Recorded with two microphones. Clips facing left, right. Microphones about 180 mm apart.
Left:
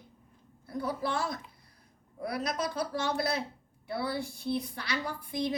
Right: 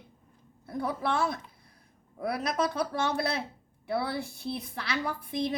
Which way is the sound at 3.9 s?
60° right (ahead or behind).